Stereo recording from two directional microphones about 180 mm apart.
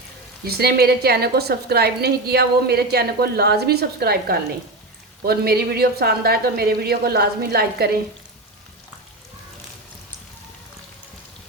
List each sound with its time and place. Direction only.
0.4 s a woman's voice: 60° right (ahead or behind)